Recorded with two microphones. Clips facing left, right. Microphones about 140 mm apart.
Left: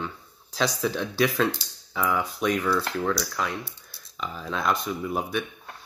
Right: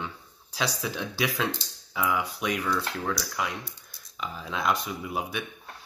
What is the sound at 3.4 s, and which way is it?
Speech, 10° right (ahead or behind).